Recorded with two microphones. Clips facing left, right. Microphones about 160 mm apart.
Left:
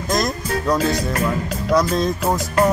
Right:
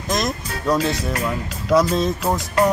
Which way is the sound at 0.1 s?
Centre (ahead or behind).